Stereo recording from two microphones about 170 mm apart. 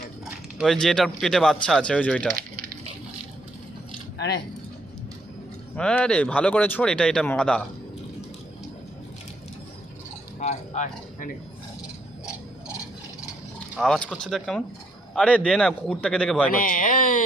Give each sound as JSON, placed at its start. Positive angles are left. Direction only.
{"t": 0.6, "sound": "speech", "side_deg": 0}
{"t": 5.7, "sound": "speech", "side_deg": 5}
{"t": 10.4, "sound": "speech", "side_deg": 45}
{"t": 13.7, "sound": "speech", "side_deg": 5}
{"t": 16.5, "sound": "speech", "side_deg": 55}